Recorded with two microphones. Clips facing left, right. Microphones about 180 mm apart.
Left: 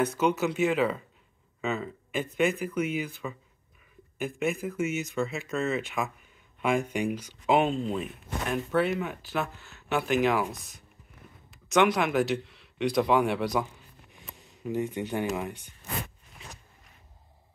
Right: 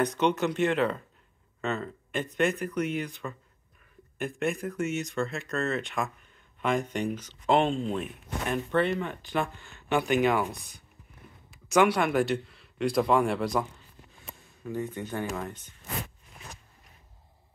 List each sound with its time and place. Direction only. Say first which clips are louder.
0.0 s speech: even; 5° left (ahead or behind)
14.1 s speech: even; 15° left (ahead or behind)